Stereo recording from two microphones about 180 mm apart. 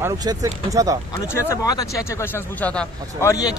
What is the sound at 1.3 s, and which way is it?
A man's voice, 15° left (ahead or behind).